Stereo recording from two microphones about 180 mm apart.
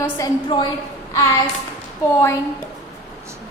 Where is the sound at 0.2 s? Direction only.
25° left (ahead or behind).